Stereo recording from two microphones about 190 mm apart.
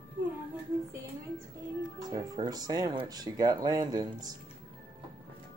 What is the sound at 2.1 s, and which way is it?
Speech, 20° right (ahead or behind).